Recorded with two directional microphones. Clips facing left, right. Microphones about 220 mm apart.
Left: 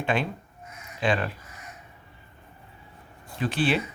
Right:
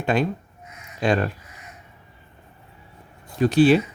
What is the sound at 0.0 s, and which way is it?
Speech, 40° right (ahead or behind).